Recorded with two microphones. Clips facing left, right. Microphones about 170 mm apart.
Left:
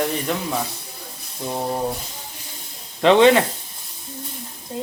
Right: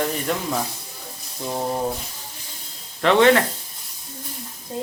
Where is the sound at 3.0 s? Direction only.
20° left (ahead or behind).